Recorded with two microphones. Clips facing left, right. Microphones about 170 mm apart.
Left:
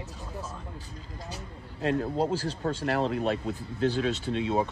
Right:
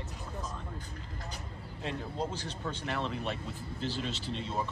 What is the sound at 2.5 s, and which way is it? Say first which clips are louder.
Speech: left 8 dB; 40° left (ahead or behind).